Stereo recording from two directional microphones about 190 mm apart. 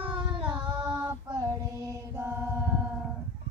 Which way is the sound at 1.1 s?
20° right (ahead or behind).